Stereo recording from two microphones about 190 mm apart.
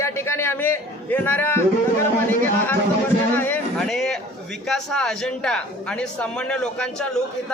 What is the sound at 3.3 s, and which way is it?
A man's voice, 10° left (ahead or behind).